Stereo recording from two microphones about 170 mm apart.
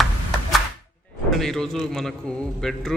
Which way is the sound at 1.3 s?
Centre (ahead or behind).